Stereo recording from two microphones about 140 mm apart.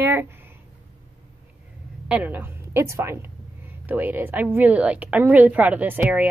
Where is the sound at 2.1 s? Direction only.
10° right (ahead or behind).